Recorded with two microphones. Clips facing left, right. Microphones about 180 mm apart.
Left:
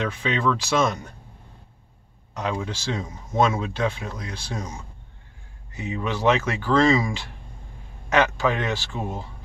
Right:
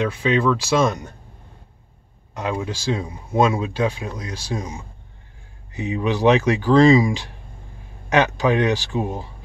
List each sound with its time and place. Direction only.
0.0 s speech: 10° right (ahead or behind)
2.3 s speech: 10° right (ahead or behind)